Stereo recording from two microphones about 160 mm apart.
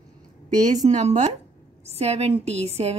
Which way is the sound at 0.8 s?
45° right (ahead or behind).